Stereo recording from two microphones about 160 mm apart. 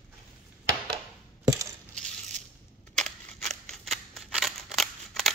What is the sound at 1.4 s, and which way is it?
Coin, 20° right (ahead or behind).